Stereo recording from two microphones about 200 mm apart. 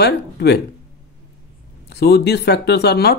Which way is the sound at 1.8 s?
55° left (ahead or behind).